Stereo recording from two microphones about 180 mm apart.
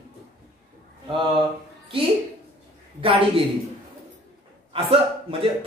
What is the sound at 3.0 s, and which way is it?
Speech, 30° right (ahead or behind).